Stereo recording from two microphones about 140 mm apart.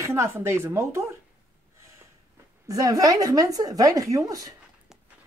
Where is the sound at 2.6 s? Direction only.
25° right (ahead or behind).